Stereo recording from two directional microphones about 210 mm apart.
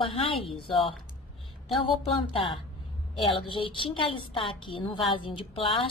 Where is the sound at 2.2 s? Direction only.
25° left (ahead or behind).